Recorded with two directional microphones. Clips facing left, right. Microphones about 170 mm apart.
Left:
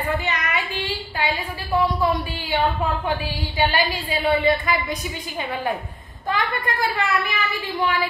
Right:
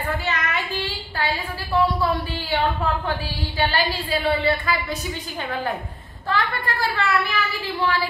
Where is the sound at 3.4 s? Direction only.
15° left (ahead or behind).